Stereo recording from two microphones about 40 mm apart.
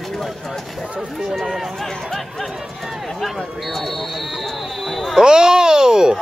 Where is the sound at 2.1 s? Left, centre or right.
Centre.